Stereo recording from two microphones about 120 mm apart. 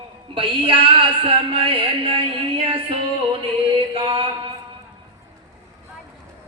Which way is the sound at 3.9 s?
45° right (ahead or behind).